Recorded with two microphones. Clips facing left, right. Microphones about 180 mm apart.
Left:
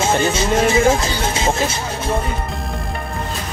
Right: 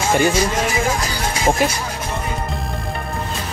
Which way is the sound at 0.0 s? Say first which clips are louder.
Right 1 dB; 25° left (ahead or behind).